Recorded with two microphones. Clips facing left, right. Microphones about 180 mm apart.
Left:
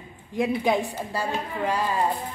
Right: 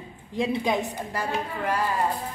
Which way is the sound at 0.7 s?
15° left (ahead or behind).